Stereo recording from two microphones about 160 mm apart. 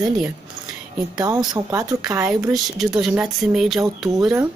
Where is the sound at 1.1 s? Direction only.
25° right (ahead or behind).